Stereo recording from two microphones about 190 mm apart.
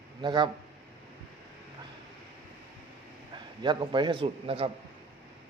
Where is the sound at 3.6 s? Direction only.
25° right (ahead or behind).